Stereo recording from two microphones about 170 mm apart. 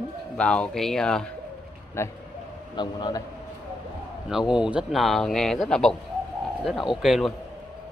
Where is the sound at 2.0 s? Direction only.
15° left (ahead or behind).